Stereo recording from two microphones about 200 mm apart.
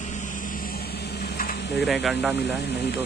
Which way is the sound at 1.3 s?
45° left (ahead or behind).